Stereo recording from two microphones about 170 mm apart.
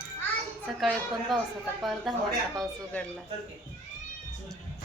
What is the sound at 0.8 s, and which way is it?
A woman's voice, centre (ahead or behind).